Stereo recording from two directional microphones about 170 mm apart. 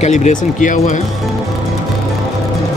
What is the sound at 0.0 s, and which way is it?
Speech, 45° left (ahead or behind).